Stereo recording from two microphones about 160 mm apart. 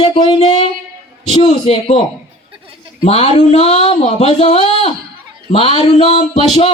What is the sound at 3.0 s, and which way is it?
Speech, 40° left (ahead or behind).